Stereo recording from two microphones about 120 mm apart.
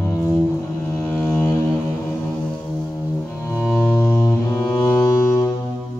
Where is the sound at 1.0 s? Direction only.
15° left (ahead or behind).